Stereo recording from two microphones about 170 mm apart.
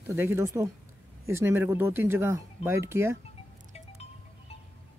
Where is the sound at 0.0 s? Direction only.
15° right (ahead or behind).